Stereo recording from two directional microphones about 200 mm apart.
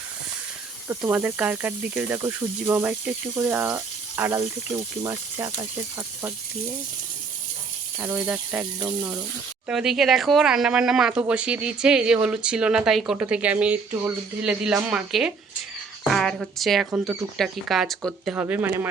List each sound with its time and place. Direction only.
0.9 s speech: 10° right (ahead or behind)
7.9 s speech: 10° right (ahead or behind)